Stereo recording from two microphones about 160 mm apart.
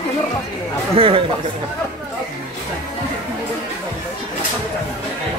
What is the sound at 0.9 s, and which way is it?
Speech, 35° right (ahead or behind).